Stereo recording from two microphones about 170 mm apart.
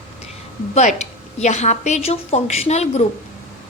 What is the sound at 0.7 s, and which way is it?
A woman's voice, 45° left (ahead or behind).